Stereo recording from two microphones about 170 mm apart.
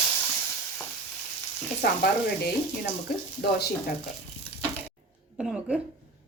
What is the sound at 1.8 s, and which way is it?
Speech, 70° left (ahead or behind).